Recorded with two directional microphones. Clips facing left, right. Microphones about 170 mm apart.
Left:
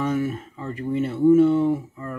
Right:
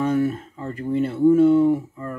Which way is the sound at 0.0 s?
35° right (ahead or behind).